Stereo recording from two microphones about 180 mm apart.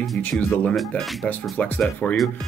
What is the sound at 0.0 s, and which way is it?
Speech, 5° left (ahead or behind).